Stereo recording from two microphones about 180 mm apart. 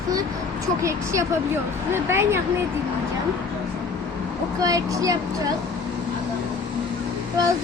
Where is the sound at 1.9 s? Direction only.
15° right (ahead or behind).